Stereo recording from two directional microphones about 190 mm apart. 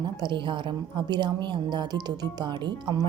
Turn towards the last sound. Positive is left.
turn(degrees=-25)  # may be behind; listen again after turning